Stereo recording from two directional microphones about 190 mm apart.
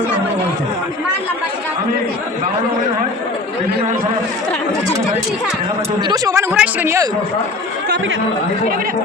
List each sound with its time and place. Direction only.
6.0 s speech: 20° right (ahead or behind)